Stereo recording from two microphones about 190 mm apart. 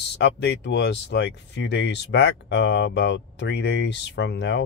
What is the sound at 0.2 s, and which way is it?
Speech, 65° left (ahead or behind).